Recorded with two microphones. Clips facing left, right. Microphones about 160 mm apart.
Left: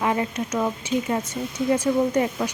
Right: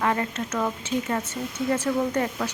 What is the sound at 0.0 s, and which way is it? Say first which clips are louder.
Speech: left 2 dB; 15° left (ahead or behind).